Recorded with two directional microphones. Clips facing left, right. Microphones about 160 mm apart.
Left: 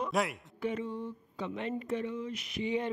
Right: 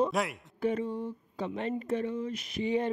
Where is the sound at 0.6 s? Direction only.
40° right (ahead or behind).